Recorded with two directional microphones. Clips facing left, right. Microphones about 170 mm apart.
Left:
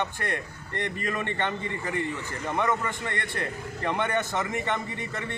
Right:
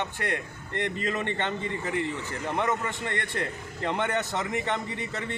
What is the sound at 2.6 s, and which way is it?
A man's voice, 20° right (ahead or behind).